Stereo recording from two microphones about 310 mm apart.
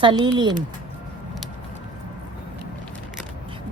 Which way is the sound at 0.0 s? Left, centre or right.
Centre.